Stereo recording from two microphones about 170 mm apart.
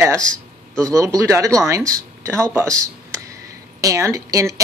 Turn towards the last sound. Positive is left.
turn(degrees=-20)  # may be behind; listen again after turning